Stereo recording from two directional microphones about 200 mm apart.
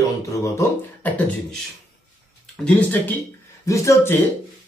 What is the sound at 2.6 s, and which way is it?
Speech, 5° left (ahead or behind).